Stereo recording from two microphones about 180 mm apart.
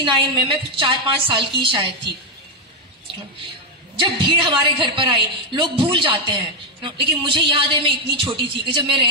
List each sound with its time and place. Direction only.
0.0 s a woman's voice: 25° right (ahead or behind)
3.9 s a woman's voice: 25° right (ahead or behind)